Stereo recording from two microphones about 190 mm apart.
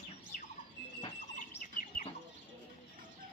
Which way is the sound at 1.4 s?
45° left (ahead or behind).